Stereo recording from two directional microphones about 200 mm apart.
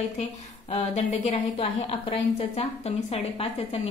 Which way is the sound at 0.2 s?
35° left (ahead or behind).